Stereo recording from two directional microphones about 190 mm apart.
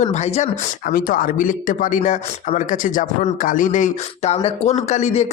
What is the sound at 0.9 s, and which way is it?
A man's voice, 50° left (ahead or behind).